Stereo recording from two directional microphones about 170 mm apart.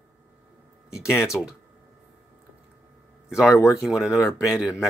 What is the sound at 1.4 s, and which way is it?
Speech, 5° left (ahead or behind).